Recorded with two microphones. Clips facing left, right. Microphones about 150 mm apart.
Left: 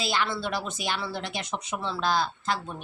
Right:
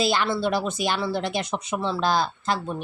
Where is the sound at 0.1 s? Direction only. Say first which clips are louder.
Right 5 dB; 35° right (ahead or behind).